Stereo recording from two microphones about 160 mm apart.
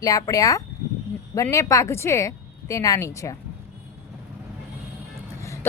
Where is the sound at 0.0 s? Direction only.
20° left (ahead or behind).